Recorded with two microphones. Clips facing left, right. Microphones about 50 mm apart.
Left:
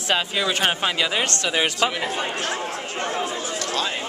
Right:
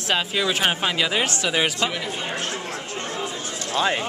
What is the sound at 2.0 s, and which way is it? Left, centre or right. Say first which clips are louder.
Speech: left 2 dB; left.